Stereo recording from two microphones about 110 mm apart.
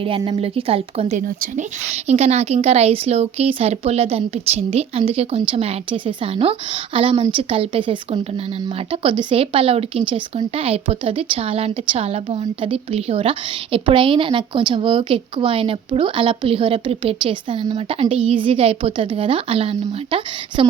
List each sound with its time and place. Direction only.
0.3 s a woman's voice: 60° right (ahead or behind)